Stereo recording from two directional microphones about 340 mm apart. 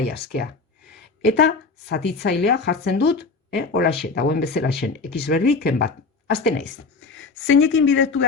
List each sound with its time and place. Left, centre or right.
0.0 s speech: left